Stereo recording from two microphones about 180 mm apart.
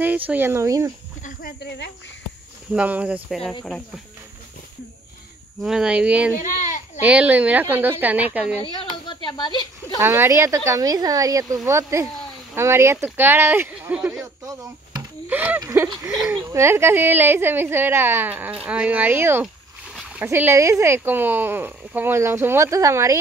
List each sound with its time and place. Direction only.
0.3 s speech: 15° right (ahead or behind)
2.7 s speech: 5° right (ahead or behind)
5.6 s speech: 5° right (ahead or behind)
6.4 s speech: 45° left (ahead or behind)
7.0 s speech: 10° right (ahead or behind)
8.5 s speech: 30° left (ahead or behind)
9.9 s speech: 15° right (ahead or behind)